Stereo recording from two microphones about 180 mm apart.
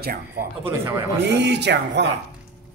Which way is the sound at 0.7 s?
15° right (ahead or behind).